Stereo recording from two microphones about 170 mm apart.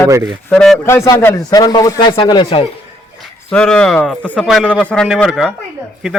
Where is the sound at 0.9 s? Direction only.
20° left (ahead or behind).